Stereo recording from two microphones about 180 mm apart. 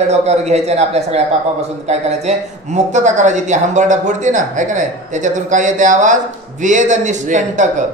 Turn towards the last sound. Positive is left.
turn(degrees=-45)  # may be behind; listen again after turning